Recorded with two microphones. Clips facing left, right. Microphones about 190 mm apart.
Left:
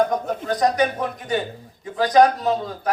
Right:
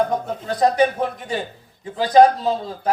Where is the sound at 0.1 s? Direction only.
30° right (ahead or behind).